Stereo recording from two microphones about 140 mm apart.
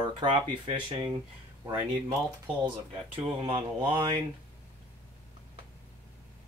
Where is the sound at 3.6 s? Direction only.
35° right (ahead or behind).